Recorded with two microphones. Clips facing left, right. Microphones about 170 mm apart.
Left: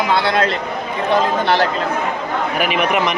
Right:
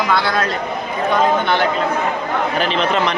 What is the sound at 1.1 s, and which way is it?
Speech, 35° left (ahead or behind).